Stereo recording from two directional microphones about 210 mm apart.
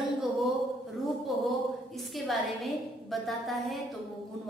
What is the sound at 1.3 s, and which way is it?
A woman's voice, centre (ahead or behind).